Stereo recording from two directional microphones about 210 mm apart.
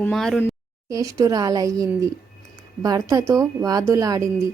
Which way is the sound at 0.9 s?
15° right (ahead or behind).